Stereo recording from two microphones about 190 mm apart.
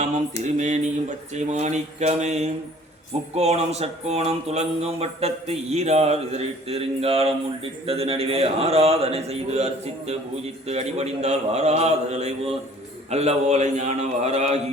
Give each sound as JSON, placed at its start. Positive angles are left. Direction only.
{"t": 0.0, "sound": "mantra", "side_deg": -40}
{"t": 1.3, "sound": "speech", "side_deg": -35}